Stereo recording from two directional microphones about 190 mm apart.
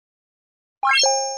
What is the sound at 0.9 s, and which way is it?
Plop, centre (ahead or behind).